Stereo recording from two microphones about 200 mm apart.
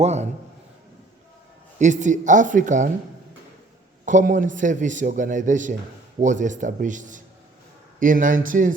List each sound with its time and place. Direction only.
0.0 s a man's voice: 35° right (ahead or behind)
1.8 s a man's voice: 40° right (ahead or behind)
4.0 s a man's voice: 40° right (ahead or behind)